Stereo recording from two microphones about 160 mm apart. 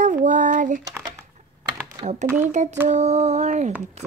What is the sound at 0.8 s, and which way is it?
Crumpling, 20° right (ahead or behind).